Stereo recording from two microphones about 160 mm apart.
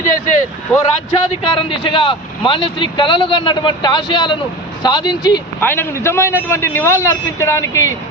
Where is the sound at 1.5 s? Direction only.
30° left (ahead or behind).